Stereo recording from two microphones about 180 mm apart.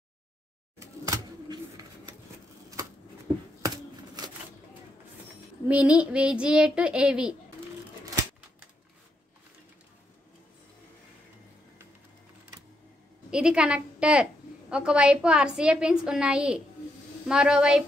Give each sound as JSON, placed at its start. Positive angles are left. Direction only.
{"t": 0.7, "sound": "bird", "side_deg": -20}
{"t": 5.7, "sound": "a woman's voice", "side_deg": -5}
{"t": 13.3, "sound": "a woman's voice", "side_deg": -5}